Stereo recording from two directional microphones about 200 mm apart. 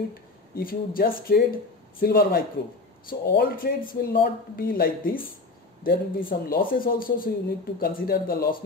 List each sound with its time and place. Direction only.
0.6 s speech: 45° left (ahead or behind)